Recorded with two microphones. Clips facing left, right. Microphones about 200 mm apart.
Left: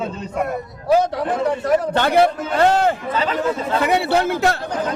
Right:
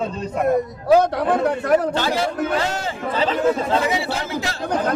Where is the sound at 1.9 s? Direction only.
60° left (ahead or behind).